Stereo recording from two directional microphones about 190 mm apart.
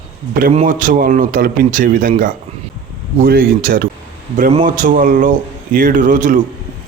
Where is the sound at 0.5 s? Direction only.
45° right (ahead or behind).